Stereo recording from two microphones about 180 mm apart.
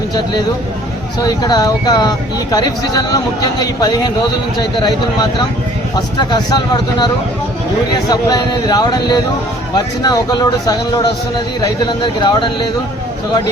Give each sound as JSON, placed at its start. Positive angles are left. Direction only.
{"t": 1.2, "sound": "speech", "side_deg": 20}
{"t": 8.0, "sound": "speech", "side_deg": 20}